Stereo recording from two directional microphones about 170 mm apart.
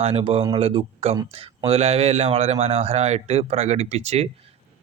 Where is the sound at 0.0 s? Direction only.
35° right (ahead or behind).